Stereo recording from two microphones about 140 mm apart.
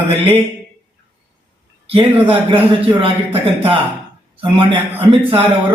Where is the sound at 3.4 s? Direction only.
40° right (ahead or behind).